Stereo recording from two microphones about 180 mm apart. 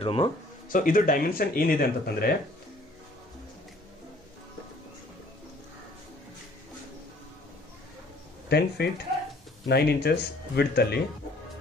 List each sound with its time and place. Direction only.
0.0 s speech: 30° left (ahead or behind)
0.7 s speech: 50° left (ahead or behind)
8.5 s speech: 65° left (ahead or behind)